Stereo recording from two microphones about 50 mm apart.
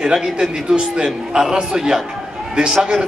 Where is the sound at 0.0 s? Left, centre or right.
Centre.